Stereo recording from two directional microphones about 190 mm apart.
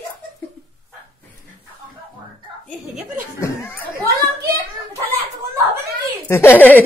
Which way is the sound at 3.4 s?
15° left (ahead or behind).